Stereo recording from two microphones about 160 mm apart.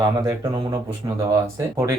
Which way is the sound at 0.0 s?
25° right (ahead or behind).